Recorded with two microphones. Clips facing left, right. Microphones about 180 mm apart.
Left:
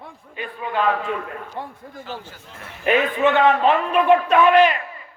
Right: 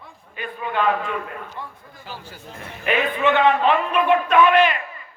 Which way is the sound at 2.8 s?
40° left (ahead or behind).